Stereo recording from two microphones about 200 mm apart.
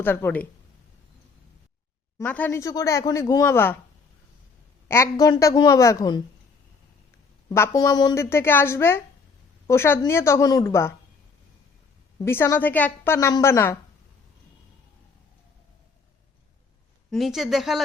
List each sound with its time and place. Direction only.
0.0 s speech: 10° left (ahead or behind)
2.1 s speech: 10° left (ahead or behind)
4.9 s speech: 15° left (ahead or behind)
7.5 s speech: 15° left (ahead or behind)
12.2 s speech: 10° left (ahead or behind)
17.1 s speech: centre (ahead or behind)